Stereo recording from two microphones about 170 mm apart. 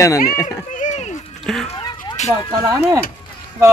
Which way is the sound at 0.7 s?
45° left (ahead or behind).